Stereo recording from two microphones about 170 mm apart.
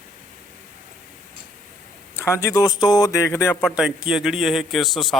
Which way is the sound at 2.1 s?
15° left (ahead or behind).